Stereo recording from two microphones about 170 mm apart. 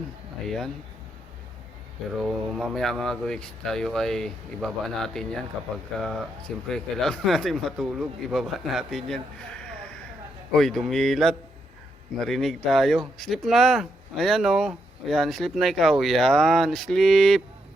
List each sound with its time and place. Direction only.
0.4 s speech: centre (ahead or behind)
2.2 s speech: centre (ahead or behind)